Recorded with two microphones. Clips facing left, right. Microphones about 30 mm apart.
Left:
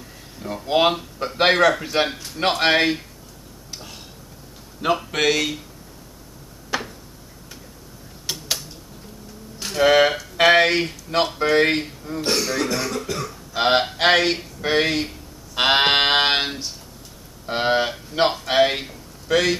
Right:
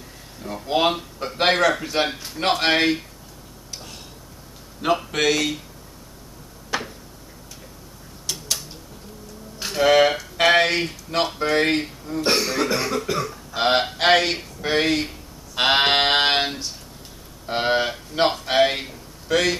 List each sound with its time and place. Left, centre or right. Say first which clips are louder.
0.4 s speech: left 2 dB; centre
4.8 s speech: even; centre
6.7 s tick-tock: even; centre
8.3 s tick-tock: left 1 dB; left
9.8 s speech: left 1 dB; centre
12.3 s speech: right 1 dB; centre
13.6 s speech: left 1 dB; centre